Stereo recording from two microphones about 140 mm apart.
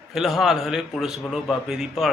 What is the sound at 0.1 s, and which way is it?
A man's voice, centre (ahead or behind).